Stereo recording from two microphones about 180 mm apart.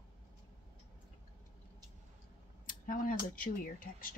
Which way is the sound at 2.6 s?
50° left (ahead or behind).